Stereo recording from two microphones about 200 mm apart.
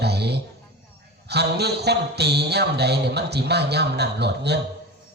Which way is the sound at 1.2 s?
55° right (ahead or behind).